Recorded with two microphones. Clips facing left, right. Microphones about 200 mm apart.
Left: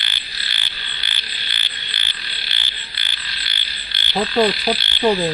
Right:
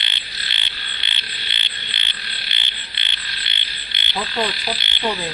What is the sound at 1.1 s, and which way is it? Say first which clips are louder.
Frog: even; 25° right (ahead or behind).